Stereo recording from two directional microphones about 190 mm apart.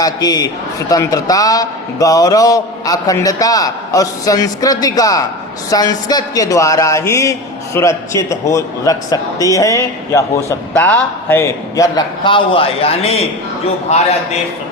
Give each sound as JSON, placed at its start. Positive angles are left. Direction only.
{"t": 0.0, "sound": "a man's voice", "side_deg": 20}